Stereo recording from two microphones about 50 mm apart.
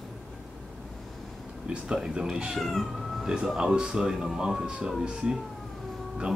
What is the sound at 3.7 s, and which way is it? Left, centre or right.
Speech, centre.